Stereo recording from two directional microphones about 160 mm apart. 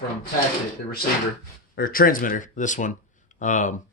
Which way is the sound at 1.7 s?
65° left (ahead or behind).